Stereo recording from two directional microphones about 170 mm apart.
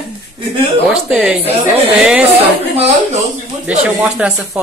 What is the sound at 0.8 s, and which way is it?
Speech, 10° right (ahead or behind).